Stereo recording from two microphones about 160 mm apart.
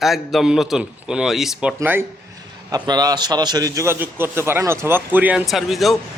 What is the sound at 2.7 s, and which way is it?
A man's voice, 25° right (ahead or behind).